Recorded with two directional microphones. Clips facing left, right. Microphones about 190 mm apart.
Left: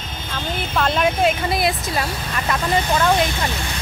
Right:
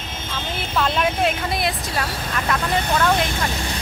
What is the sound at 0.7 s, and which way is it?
Speech, centre (ahead or behind).